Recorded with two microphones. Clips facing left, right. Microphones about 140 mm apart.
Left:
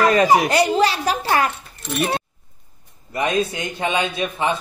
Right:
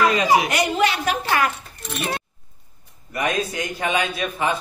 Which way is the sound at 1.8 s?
Centre (ahead or behind).